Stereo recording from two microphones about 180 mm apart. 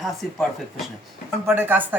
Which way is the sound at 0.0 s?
Centre (ahead or behind).